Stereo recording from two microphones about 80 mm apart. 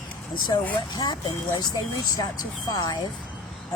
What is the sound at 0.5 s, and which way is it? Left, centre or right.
Speech, left.